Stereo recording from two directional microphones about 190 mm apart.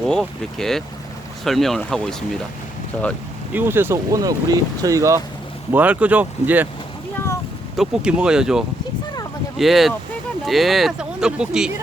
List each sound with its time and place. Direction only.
0.1 s speech: centre (ahead or behind)
3.5 s speech: 10° right (ahead or behind)
7.8 s speech: 5° right (ahead or behind)